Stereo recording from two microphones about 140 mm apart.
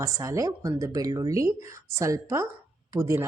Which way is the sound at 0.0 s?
25° right (ahead or behind).